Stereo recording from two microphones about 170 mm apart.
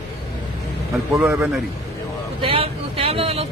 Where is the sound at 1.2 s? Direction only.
10° right (ahead or behind).